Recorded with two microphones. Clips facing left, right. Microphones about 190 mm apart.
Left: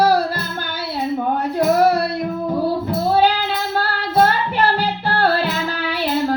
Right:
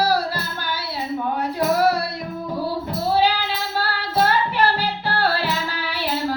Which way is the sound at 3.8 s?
50° left (ahead or behind).